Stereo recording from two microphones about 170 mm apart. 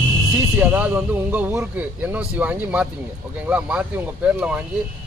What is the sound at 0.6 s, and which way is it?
Speech, 10° right (ahead or behind).